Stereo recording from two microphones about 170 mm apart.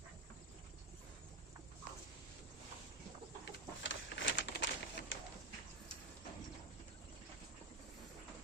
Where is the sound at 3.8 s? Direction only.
90° left.